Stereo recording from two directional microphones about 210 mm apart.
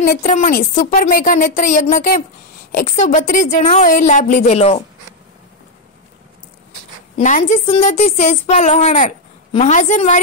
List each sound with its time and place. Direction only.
0.0 s speech: 35° left (ahead or behind)
7.2 s speech: 35° left (ahead or behind)